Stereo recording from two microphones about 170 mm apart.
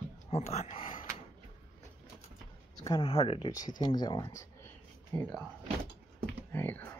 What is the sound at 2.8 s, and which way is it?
Speech, 30° left (ahead or behind).